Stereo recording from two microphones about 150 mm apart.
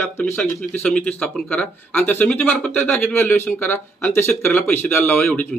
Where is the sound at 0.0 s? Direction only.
15° left (ahead or behind).